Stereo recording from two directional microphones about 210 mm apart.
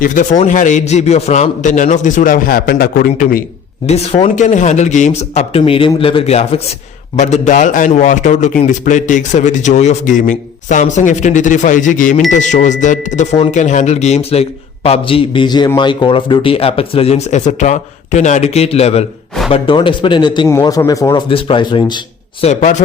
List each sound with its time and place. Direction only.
0.0 s a man's voice: 40° left (ahead or behind)
3.8 s a man's voice: 30° left (ahead or behind)
22.4 s a man's voice: 35° left (ahead or behind)